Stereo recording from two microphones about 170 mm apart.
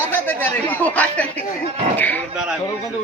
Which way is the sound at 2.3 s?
5° right (ahead or behind).